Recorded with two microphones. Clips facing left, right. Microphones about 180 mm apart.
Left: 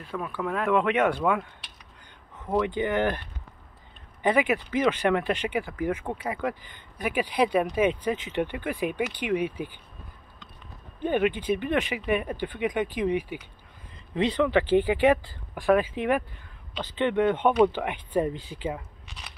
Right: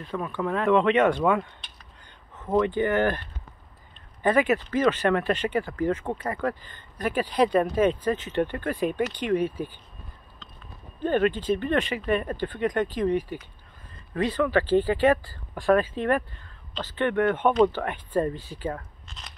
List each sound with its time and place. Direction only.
0.0 s speech: 5° left (ahead or behind)
11.0 s speech: 15° left (ahead or behind)
18.8 s camera: 10° left (ahead or behind)